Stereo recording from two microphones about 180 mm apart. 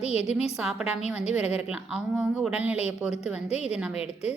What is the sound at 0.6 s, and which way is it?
A woman's voice, 5° right (ahead or behind).